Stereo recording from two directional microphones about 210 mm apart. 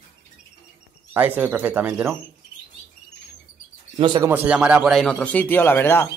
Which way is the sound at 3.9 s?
20° right (ahead or behind).